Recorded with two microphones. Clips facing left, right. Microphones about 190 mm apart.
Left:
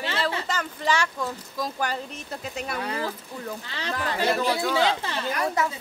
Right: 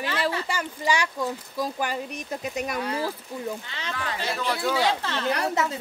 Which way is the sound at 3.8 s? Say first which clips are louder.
Left 3 dB; 35° left (ahead or behind).